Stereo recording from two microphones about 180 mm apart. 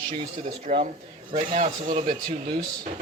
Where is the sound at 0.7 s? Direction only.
45° right (ahead or behind).